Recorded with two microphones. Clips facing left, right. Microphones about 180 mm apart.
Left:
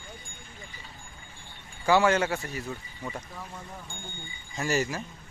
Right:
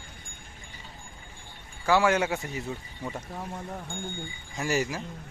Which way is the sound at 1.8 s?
Centre (ahead or behind).